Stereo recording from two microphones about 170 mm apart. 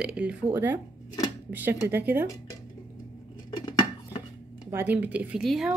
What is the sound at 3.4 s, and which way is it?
Dishes, 25° left (ahead or behind).